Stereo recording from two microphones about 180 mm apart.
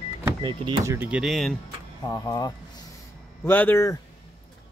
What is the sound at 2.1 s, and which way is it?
Speech, 20° left (ahead or behind).